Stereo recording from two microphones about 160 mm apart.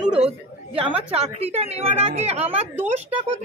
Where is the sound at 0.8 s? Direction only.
40° right (ahead or behind).